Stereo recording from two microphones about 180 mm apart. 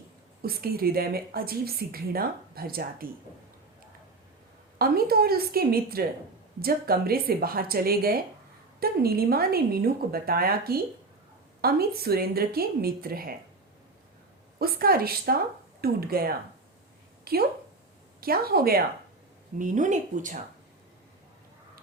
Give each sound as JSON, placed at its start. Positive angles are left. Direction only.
{"t": 0.4, "sound": "a woman's voice", "side_deg": -55}
{"t": 4.8, "sound": "a woman's voice", "side_deg": -55}
{"t": 14.6, "sound": "a woman's voice", "side_deg": -55}
{"t": 19.5, "sound": "speech", "side_deg": -45}